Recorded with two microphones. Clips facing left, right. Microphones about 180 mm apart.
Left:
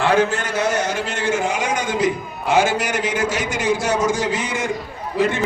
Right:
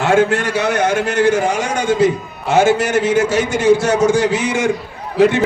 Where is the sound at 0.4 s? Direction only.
70° right (ahead or behind).